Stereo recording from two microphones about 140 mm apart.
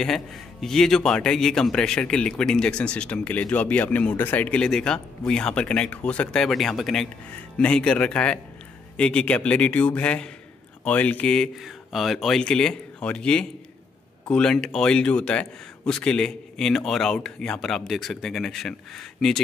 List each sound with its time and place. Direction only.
0.0 s speech: 5° left (ahead or behind)